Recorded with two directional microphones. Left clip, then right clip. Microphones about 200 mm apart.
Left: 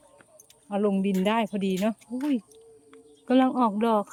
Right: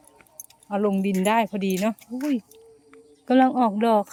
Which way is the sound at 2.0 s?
5° right (ahead or behind).